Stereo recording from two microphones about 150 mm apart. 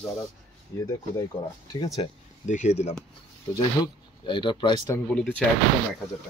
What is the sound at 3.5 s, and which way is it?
Speech, 30° left (ahead or behind).